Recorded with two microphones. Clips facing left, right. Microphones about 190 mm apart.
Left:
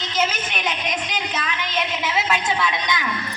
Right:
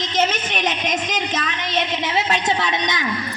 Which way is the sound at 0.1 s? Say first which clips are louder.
Right 2 dB; 40° right (ahead or behind).